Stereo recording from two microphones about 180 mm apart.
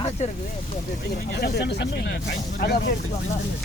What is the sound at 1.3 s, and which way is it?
Speech, 70° left (ahead or behind).